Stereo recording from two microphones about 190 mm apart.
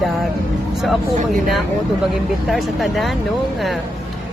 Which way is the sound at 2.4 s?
Centre (ahead or behind).